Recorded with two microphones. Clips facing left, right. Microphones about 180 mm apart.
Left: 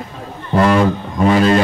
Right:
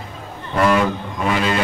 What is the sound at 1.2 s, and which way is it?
Speech, 35° left (ahead or behind).